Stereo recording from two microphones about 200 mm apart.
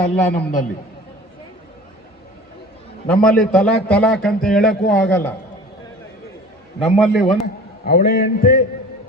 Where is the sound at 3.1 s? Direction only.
5° left (ahead or behind).